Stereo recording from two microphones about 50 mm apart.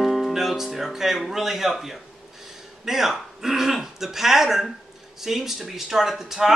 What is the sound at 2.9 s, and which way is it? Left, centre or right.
Speech, centre.